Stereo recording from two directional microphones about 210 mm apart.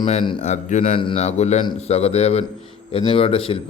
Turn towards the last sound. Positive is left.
turn(degrees=25)  # may be behind; listen again after turning